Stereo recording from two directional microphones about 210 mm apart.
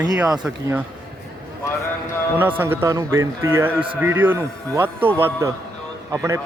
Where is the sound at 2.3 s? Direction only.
10° right (ahead or behind).